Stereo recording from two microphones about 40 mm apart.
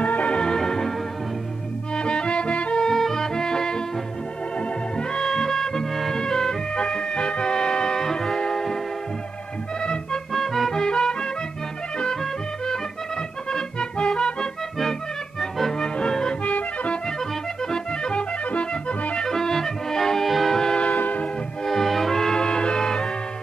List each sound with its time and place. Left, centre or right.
0.0 s organ: left
0.4 s organ: centre
2.0 s music: left
2.8 s music: centre
9.8 s music: left
10.3 s music: centre
10.7 s music: centre
15.8 s music: centre
16.4 s music: left
17.6 s music: centre
18.4 s music: left
19.2 s music: centre
20.7 s train: left
21.6 s music: centre